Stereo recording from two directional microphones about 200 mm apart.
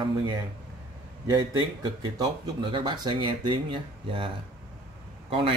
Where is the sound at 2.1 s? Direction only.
20° right (ahead or behind).